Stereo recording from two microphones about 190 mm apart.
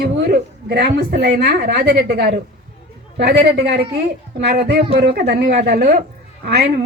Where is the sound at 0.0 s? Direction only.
60° right (ahead or behind).